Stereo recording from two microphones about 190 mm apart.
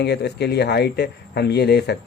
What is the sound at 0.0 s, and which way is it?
Speech, 60° left (ahead or behind).